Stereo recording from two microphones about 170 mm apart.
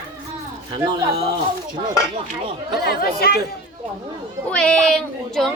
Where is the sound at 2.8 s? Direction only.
65° left (ahead or behind).